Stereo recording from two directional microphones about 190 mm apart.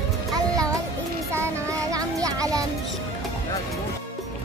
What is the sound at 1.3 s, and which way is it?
Child singing, 15° right (ahead or behind).